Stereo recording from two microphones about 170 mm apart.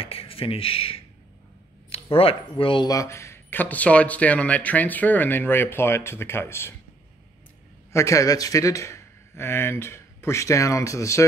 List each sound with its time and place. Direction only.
0.0 s speech: 35° left (ahead or behind); by 6.7 s 15° left (ahead or behind)
7.9 s speech: 20° left (ahead or behind)